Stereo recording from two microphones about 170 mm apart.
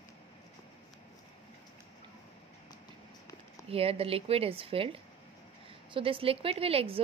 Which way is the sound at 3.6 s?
35° right (ahead or behind).